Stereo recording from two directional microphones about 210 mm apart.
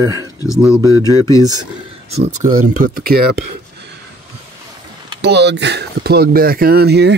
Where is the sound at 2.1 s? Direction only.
35° right (ahead or behind).